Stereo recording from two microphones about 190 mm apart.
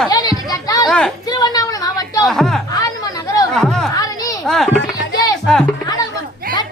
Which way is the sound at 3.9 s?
20° left (ahead or behind).